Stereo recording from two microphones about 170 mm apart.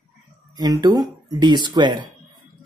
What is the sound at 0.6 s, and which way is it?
Speech, 20° right (ahead or behind).